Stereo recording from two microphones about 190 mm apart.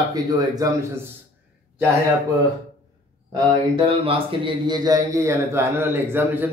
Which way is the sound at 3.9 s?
30° right (ahead or behind).